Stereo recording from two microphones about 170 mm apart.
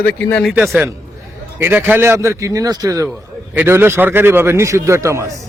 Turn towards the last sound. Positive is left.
turn(degrees=-15)  # may be behind; listen again after turning